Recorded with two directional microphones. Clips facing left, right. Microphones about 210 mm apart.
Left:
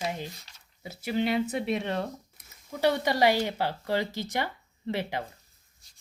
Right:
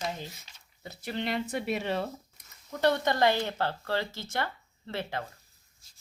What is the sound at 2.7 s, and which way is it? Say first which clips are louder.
Speech: left 1 dB; 10° left (ahead or behind).